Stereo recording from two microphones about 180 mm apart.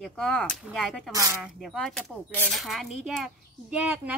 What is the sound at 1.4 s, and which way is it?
A woman's voice, centre (ahead or behind).